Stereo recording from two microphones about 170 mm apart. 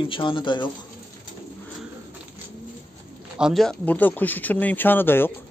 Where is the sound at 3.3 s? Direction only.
Centre (ahead or behind).